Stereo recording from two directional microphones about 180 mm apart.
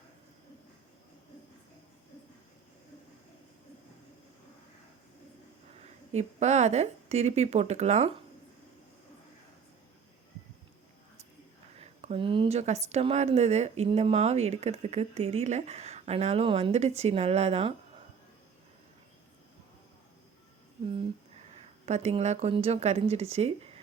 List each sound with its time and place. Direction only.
5.8 s a woman's voice: 40° right (ahead or behind)
11.8 s speech: 35° right (ahead or behind)
20.9 s speech: 35° right (ahead or behind)